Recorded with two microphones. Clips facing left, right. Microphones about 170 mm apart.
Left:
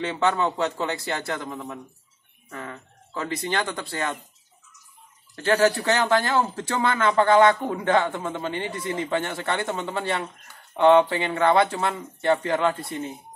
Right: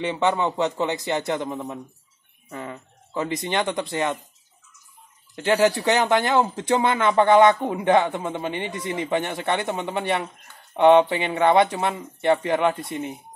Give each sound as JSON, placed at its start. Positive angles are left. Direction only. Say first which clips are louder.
{"t": 0.0, "sound": "speech", "louder": "right 1 dB", "side_deg": -15}
{"t": 5.3, "sound": "speech", "louder": "right 1 dB", "side_deg": -20}